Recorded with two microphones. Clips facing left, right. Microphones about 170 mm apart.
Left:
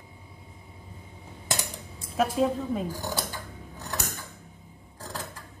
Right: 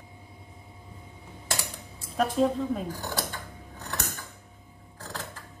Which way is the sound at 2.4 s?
5° left (ahead or behind).